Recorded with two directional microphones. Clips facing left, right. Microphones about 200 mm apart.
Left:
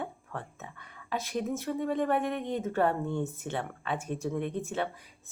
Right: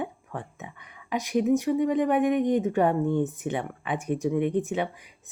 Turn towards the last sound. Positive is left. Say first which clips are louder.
# right 4 dB
turn(degrees=-15)  # may be behind; listen again after turning